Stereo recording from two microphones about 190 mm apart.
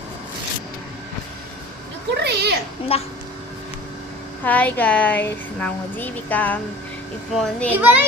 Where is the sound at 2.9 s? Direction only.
30° left (ahead or behind).